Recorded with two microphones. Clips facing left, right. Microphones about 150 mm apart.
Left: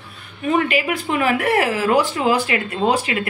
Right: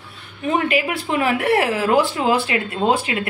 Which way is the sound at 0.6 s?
30° right (ahead or behind).